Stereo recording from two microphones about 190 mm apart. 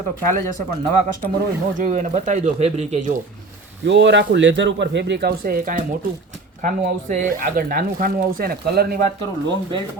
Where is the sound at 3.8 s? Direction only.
70° right (ahead or behind); by 9.0 s 55° right (ahead or behind).